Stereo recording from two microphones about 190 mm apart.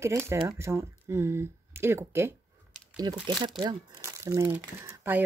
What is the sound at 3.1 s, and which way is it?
Speech, 25° right (ahead or behind).